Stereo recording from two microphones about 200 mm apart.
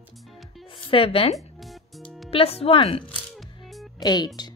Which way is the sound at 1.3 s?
Centre (ahead or behind).